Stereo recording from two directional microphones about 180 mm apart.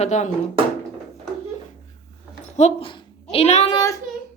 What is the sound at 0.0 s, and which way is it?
Speech, 40° left (ahead or behind).